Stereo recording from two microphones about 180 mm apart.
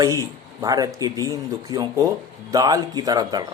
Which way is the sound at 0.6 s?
20° right (ahead or behind).